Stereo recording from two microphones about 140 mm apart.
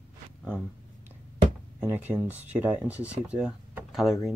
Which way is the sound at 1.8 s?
10° right (ahead or behind).